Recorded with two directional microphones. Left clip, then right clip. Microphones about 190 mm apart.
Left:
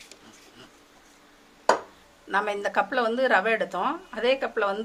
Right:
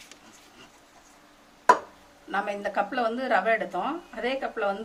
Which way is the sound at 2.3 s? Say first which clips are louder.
Left 3 dB; 55° left (ahead or behind).